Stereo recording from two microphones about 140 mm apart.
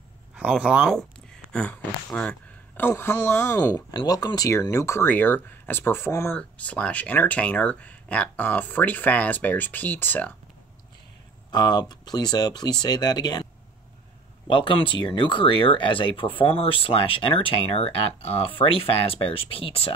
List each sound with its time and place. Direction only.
0.4 s speech: 10° right (ahead or behind)
1.5 s speech: 10° left (ahead or behind)
11.5 s speech: 30° left (ahead or behind)
14.5 s speech: 40° left (ahead or behind)